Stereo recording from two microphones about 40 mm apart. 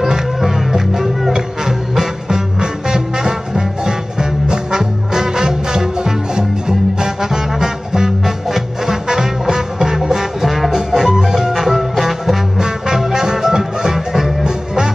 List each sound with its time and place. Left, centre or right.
0.0 s music: centre
12.5 s music: centre